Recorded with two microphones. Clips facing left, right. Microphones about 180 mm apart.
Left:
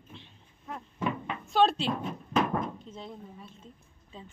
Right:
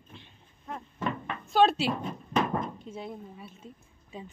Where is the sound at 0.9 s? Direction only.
10° left (ahead or behind).